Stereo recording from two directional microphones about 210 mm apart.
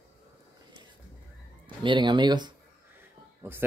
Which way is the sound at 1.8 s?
20° right (ahead or behind).